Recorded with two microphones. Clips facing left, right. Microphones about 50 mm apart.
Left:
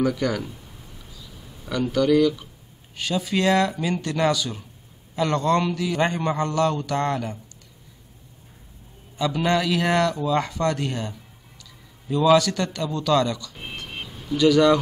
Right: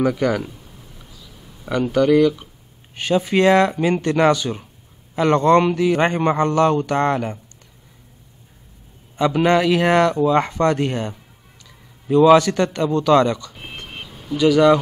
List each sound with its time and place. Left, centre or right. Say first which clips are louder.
0.0 s speech: right 4 dB; centre
1.7 s a man's voice: right 4 dB; right
9.1 s a man's voice: right 6 dB; right
14.3 s speech: right 3 dB; centre